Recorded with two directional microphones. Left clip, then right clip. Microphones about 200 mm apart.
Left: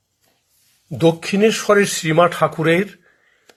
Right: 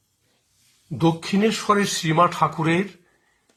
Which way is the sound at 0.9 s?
15° left (ahead or behind).